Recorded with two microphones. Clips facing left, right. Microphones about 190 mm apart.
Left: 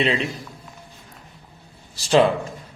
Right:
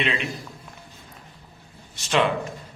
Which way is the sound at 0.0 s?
30° left (ahead or behind).